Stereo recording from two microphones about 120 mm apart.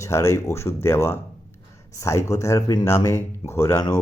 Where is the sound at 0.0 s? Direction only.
25° left (ahead or behind).